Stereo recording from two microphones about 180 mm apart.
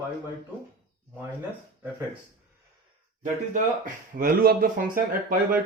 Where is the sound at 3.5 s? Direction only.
50° right (ahead or behind).